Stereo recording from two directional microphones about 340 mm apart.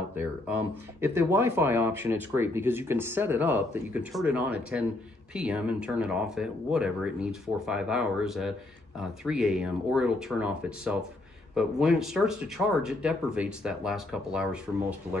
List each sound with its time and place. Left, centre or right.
0.1 s speech: centre